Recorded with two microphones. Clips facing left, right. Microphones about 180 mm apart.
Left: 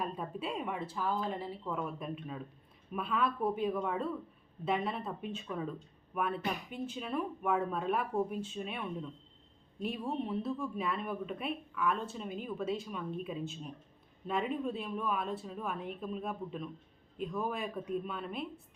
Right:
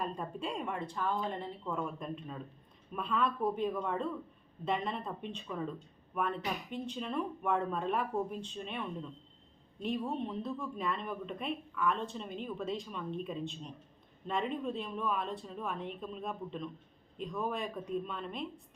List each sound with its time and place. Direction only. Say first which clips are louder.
0.0 s speech: even; 5° left (ahead or behind)